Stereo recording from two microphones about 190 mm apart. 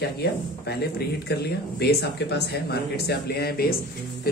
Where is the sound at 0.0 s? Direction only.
55° left (ahead or behind).